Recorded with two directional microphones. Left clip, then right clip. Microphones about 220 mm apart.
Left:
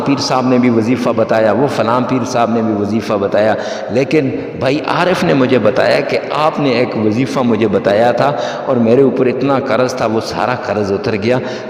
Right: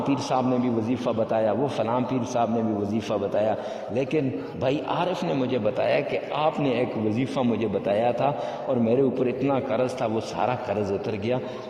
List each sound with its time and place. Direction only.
0.1 s a man's voice: 40° left (ahead or behind)